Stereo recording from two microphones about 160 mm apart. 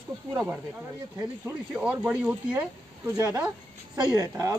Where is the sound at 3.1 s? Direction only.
20° right (ahead or behind).